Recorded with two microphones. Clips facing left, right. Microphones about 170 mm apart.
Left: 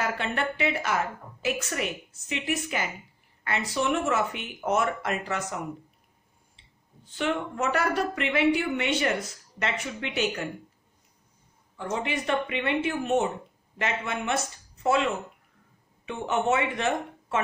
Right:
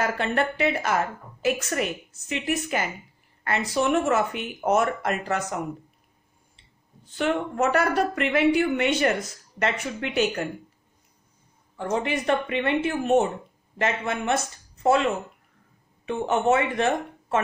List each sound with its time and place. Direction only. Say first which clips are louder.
0.0 s a woman's voice: right 4 dB; 45° right (ahead or behind)
7.2 s a woman's voice: right 4 dB; 45° right (ahead or behind)
11.7 s a woman's voice: right 4 dB; 45° right (ahead or behind)
16.1 s speech: right 4 dB; 40° right (ahead or behind)